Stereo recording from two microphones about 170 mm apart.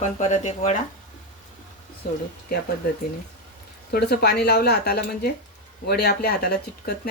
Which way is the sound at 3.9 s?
70° left (ahead or behind).